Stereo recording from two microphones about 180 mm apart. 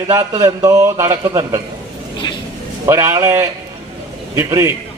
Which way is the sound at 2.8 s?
15° right (ahead or behind).